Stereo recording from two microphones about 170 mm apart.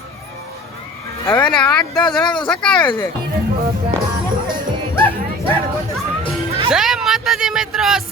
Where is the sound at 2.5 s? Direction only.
5° left (ahead or behind).